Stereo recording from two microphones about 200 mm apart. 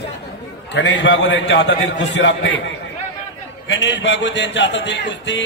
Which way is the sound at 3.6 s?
65° left (ahead or behind).